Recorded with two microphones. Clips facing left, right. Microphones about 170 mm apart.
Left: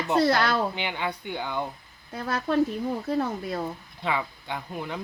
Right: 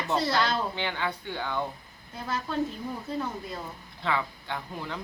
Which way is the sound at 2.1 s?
70° left (ahead or behind).